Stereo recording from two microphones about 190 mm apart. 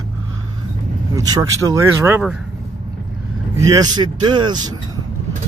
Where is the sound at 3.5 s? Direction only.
20° right (ahead or behind).